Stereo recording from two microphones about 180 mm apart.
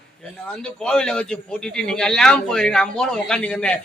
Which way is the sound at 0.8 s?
5° left (ahead or behind).